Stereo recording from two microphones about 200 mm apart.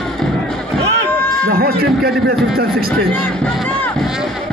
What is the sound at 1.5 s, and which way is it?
Speech, 50° right (ahead or behind).